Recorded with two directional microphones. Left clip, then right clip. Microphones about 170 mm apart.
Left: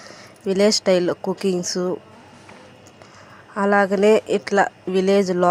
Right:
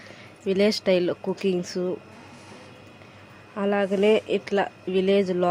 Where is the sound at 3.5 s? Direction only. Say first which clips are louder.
Left 7 dB; 10° left (ahead or behind).